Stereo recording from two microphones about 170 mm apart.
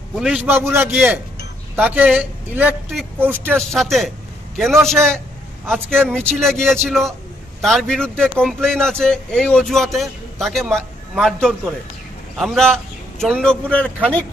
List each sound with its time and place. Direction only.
0.2 s a man's voice: 10° right (ahead or behind)
3.4 s a man's voice: 5° left (ahead or behind)